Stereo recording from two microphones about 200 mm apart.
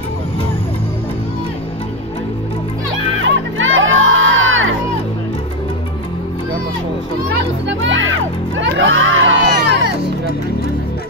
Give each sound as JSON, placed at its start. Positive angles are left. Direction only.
{"t": 3.3, "sound": "crowd", "side_deg": -75}
{"t": 7.6, "sound": "crowd", "side_deg": -70}